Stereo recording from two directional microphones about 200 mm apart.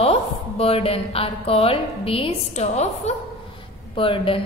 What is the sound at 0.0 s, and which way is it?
A woman's voice, 30° left (ahead or behind).